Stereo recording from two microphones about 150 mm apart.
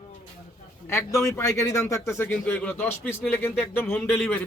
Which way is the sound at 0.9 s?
20° left (ahead or behind).